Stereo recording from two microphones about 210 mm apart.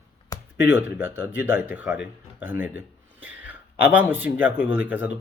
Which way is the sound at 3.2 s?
10° right (ahead or behind).